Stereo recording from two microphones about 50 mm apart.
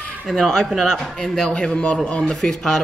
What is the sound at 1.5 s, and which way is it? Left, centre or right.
A man's voice, left.